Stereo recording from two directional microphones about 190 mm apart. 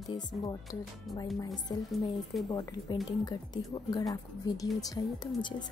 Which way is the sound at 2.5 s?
20° left (ahead or behind).